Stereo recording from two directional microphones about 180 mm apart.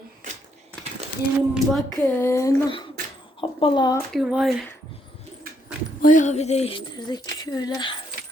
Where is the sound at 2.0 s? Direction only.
10° left (ahead or behind).